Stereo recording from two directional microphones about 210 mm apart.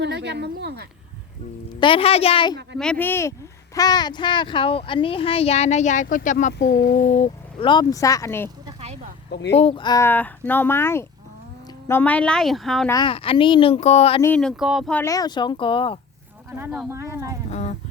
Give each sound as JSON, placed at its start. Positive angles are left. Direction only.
{"t": 0.0, "sound": "speech", "side_deg": -55}
{"t": 1.8, "sound": "a child's voice", "side_deg": 25}
{"t": 2.7, "sound": "a child's voice", "side_deg": 5}
{"t": 6.5, "sound": "speech", "side_deg": 50}
{"t": 7.7, "sound": "speech", "side_deg": 20}
{"t": 8.4, "sound": "a sound", "side_deg": -20}
{"t": 9.3, "sound": "speech", "side_deg": 55}
{"t": 9.6, "sound": "speech", "side_deg": 25}
{"t": 12.9, "sound": "a child's voice", "side_deg": 20}
{"t": 14.2, "sound": "speech", "side_deg": 5}
{"t": 15.0, "sound": "a child's voice", "side_deg": 15}
{"t": 16.6, "sound": "speech", "side_deg": -10}
{"t": 17.5, "sound": "a sound", "side_deg": 35}